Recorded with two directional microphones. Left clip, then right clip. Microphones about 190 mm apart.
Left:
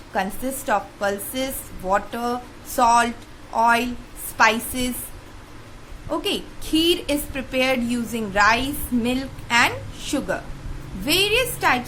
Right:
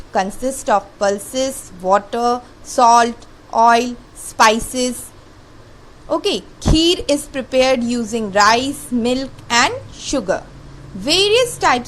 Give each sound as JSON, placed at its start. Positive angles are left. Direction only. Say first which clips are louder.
{"t": 0.1, "sound": "a woman's voice", "louder": "right 6 dB", "side_deg": -30}
{"t": 6.1, "sound": "a woman's voice", "louder": "right 6 dB", "side_deg": -30}